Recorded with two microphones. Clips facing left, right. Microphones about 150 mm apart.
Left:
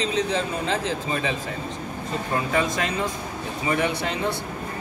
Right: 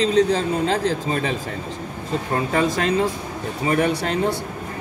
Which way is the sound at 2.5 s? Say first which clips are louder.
Right 6 dB; 35° right (ahead or behind).